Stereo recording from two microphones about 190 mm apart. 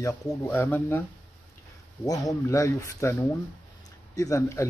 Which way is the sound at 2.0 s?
20° left (ahead or behind).